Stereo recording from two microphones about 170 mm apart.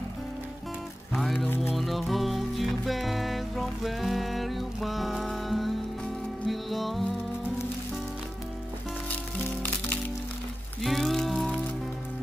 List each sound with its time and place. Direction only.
1.1 s music: centre (ahead or behind)
9.1 s music: 10° left (ahead or behind)